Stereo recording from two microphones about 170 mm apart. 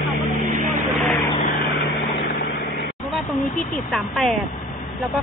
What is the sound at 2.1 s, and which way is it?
Vehicle, 65° left (ahead or behind).